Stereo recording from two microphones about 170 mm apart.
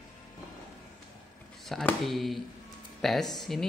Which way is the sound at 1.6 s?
Centre (ahead or behind).